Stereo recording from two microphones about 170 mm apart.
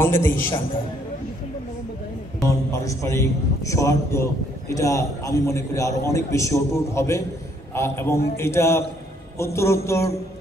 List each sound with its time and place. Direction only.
0.0 s a man's voice: 15° left (ahead or behind)
2.4 s a man's voice: 15° left (ahead or behind)